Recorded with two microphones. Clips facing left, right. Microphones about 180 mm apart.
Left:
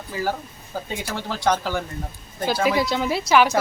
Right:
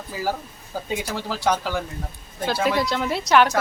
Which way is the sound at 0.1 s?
5° right (ahead or behind).